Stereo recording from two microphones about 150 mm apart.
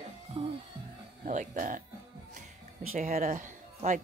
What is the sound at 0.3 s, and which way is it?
Music, 40° right (ahead or behind).